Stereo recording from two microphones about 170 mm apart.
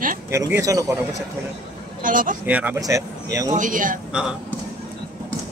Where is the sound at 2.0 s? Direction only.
50° right (ahead or behind).